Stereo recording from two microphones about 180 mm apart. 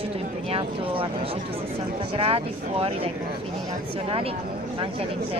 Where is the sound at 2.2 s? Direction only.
30° right (ahead or behind).